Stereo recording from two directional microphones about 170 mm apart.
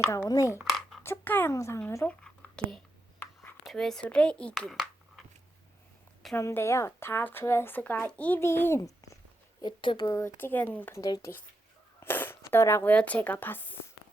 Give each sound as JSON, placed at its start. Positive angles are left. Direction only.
{"t": 0.1, "sound": "speech", "side_deg": 20}
{"t": 0.6, "sound": "a sound", "side_deg": 0}
{"t": 1.0, "sound": "speech", "side_deg": 10}
{"t": 2.0, "sound": "a sound", "side_deg": 5}
{"t": 3.7, "sound": "a woman's voice", "side_deg": 5}
{"t": 6.3, "sound": "speech", "side_deg": 15}
{"t": 9.6, "sound": "speech", "side_deg": 30}